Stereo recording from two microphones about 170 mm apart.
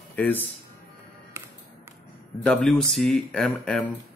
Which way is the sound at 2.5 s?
5° left (ahead or behind).